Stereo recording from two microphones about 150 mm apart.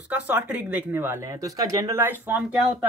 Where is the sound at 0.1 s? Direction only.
10° right (ahead or behind).